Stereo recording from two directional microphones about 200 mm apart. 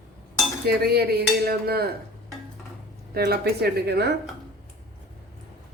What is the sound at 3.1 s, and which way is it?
Dishes, 55° right (ahead or behind).